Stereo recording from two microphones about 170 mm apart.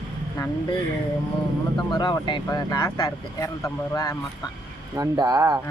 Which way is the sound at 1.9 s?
25° left (ahead or behind).